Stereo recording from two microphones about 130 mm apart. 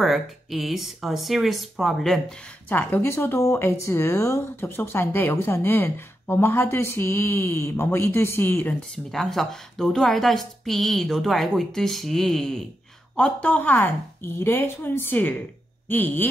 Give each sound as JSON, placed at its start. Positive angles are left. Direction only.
{"t": 0.0, "sound": "a woman's voice", "side_deg": 0}
{"t": 2.7, "sound": "speech", "side_deg": 15}
{"t": 9.1, "sound": "a woman's voice", "side_deg": 0}